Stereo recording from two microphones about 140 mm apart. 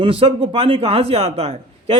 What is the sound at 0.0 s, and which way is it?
Speech, 40° right (ahead or behind).